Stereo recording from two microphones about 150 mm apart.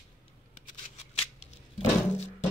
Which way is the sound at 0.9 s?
40° left (ahead or behind).